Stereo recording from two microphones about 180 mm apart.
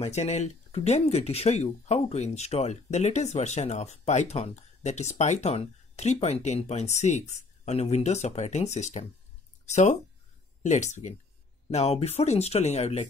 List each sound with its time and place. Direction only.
0.0 s speech: 35° left (ahead or behind)